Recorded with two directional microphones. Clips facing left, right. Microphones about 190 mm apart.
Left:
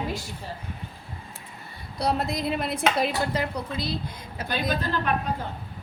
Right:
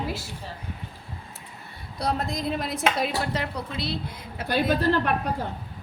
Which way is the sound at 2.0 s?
5° left (ahead or behind).